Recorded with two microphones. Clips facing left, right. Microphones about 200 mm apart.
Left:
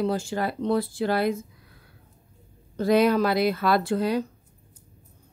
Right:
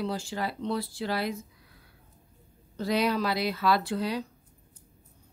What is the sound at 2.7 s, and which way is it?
Speech, 50° left (ahead or behind).